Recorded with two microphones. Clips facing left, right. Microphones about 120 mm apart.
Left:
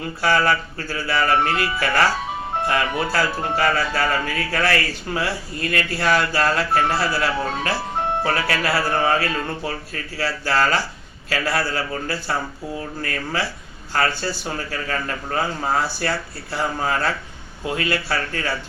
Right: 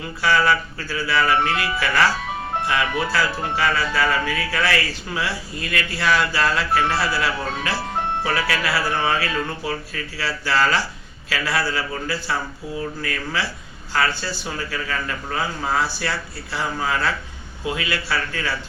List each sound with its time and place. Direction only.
0.2 s speech: 50° left (ahead or behind)
13.0 s speech: 40° left (ahead or behind)